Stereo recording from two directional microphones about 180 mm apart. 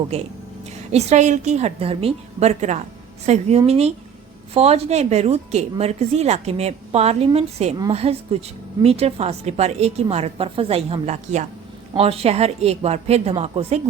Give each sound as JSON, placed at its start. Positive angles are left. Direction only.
{"t": 0.1, "sound": "a woman's voice", "side_deg": -35}